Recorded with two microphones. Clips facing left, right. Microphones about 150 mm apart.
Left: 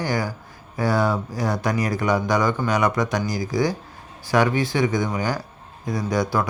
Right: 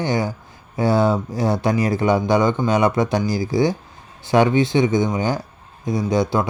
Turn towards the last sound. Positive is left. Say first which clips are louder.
# right 3 dB
turn(degrees=-25)  # may be behind; listen again after turning